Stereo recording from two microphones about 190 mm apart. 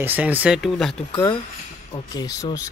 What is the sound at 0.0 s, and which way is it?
Speech, 10° right (ahead or behind).